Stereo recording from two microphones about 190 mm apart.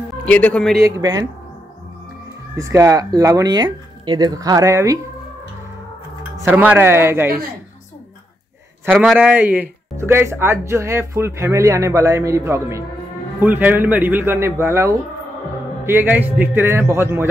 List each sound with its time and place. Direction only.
0.1 s speech: 5° left (ahead or behind)
0.8 s speech: 20° right (ahead or behind)
2.5 s speech: 15° right (ahead or behind)
6.4 s speech: 5° right (ahead or behind)
8.9 s speech: centre (ahead or behind)
9.2 s speech: 10° right (ahead or behind)